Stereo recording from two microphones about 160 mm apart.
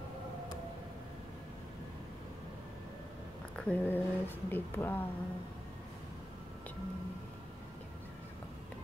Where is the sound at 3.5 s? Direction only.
10° left (ahead or behind).